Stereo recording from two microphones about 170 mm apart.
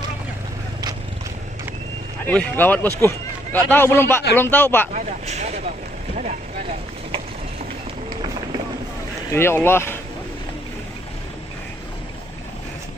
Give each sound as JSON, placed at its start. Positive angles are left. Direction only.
{"t": 2.2, "sound": "speech", "side_deg": 10}
{"t": 4.9, "sound": "speech", "side_deg": -40}
{"t": 9.3, "sound": "speech", "side_deg": 15}